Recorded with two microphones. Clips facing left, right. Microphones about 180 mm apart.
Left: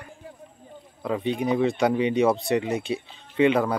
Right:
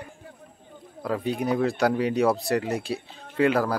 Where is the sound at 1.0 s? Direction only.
5° right (ahead or behind).